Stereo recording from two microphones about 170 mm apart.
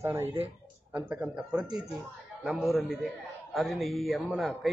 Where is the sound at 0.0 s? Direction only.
15° right (ahead or behind).